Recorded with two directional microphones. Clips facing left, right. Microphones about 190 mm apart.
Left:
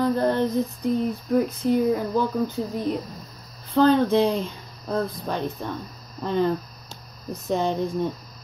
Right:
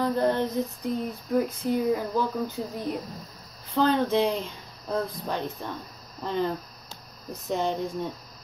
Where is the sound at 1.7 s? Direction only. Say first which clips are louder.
Left 5 dB; 15° left (ahead or behind).